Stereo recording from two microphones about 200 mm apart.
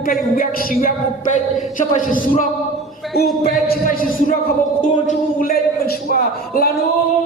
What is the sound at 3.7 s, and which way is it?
A man's voice, 45° left (ahead or behind).